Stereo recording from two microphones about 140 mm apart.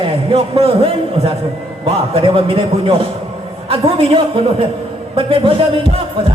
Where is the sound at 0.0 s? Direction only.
40° right (ahead or behind).